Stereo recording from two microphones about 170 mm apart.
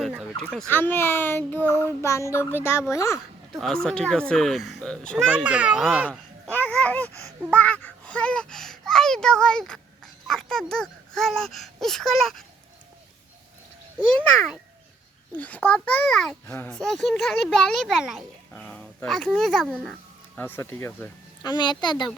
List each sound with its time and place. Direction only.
0.0 s a sound: centre (ahead or behind)
0.4 s speech: 5° left (ahead or behind)
3.5 s a child's voice: 5° left (ahead or behind)
6.1 s a child's voice: 10° left (ahead or behind)
15.4 s speech: 10° left (ahead or behind)
16.6 s speech: 10° left (ahead or behind)
16.8 s a child's voice: centre (ahead or behind); by 22.1 s 25° left (ahead or behind)